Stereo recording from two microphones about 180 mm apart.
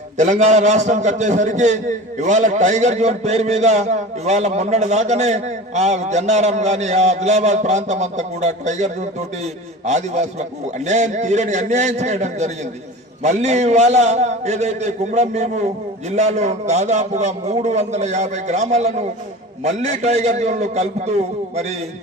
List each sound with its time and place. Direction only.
0.2 s a man's voice: 40° right (ahead or behind)